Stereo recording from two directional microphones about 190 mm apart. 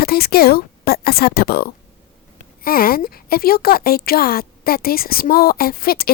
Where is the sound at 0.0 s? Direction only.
55° left (ahead or behind).